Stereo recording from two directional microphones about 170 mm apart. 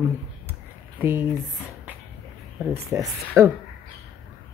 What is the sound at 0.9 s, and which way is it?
Speech, 10° right (ahead or behind).